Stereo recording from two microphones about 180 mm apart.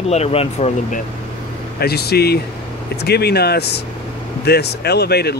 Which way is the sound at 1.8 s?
60° left (ahead or behind).